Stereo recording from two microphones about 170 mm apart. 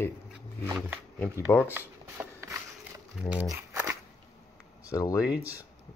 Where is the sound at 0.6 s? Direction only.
10° right (ahead or behind).